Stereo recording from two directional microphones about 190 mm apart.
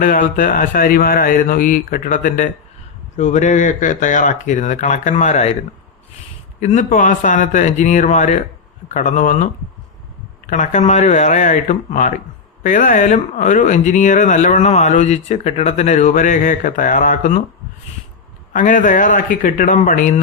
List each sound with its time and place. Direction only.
0.0 s speech: 45° left (ahead or behind)
6.6 s speech: 40° left (ahead or behind)
18.5 s speech: 45° left (ahead or behind)